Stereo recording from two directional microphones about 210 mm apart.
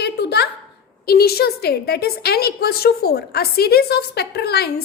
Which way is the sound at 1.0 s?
50° left (ahead or behind).